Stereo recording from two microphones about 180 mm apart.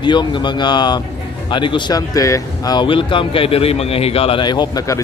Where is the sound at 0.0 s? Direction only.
25° left (ahead or behind).